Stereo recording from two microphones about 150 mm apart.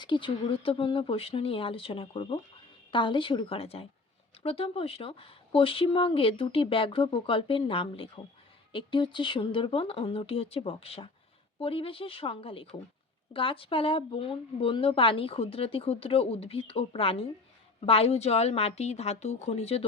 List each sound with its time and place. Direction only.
0.0 s a woman's voice: 30° left (ahead or behind)